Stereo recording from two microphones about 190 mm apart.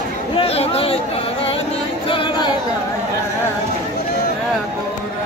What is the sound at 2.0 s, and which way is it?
Music, 25° left (ahead or behind).